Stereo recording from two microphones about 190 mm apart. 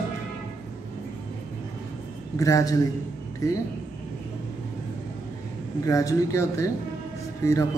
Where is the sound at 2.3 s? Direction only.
15° left (ahead or behind).